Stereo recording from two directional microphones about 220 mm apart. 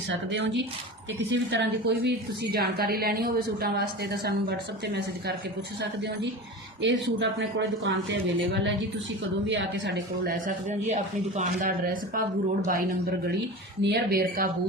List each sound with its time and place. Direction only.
0.1 s a woman's voice: 55° right (ahead or behind)
6.8 s a woman's voice: 55° right (ahead or behind)
10.4 s a woman's voice: 30° right (ahead or behind)